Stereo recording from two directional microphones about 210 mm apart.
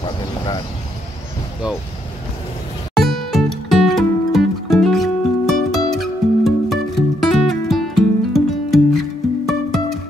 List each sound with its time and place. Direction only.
3.0 s music: centre (ahead or behind)